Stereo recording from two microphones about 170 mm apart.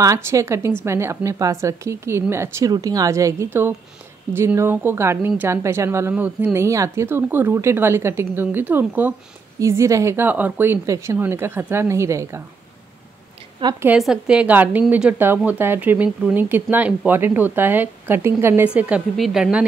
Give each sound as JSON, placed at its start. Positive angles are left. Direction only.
{"t": 0.0, "sound": "a woman's voice", "side_deg": -20}
{"t": 13.7, "sound": "a woman's voice", "side_deg": -5}